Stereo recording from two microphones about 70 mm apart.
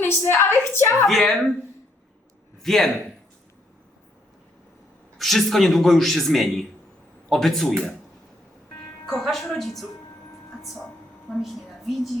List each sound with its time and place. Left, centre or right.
0.3 s a woman's voice: left
1.0 s a man's voice: centre
2.6 s a man's voice: centre
5.1 s a man's voice: centre
9.0 s a man's voice: centre
10.6 s a sound: centre